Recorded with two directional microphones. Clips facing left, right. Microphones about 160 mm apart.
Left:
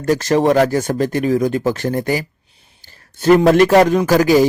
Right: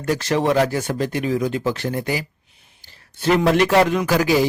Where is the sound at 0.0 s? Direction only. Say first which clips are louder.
Left 5 dB; 45° left (ahead or behind).